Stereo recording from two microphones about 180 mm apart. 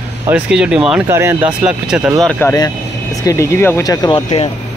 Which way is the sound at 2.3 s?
15° left (ahead or behind).